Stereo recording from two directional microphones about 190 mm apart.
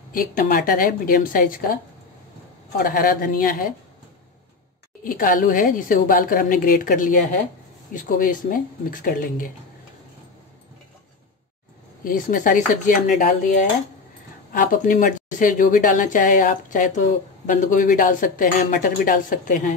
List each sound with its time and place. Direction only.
0.1 s speech: 50° left (ahead or behind)
2.8 s speech: 45° left (ahead or behind)
5.0 s speech: 45° left (ahead or behind)
12.0 s speech: 45° left (ahead or behind)
14.5 s speech: 45° left (ahead or behind)